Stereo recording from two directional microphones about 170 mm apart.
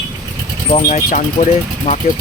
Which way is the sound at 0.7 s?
40° left (ahead or behind).